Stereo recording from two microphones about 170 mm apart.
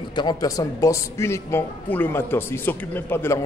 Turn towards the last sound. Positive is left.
turn(degrees=15)  # may be behind; listen again after turning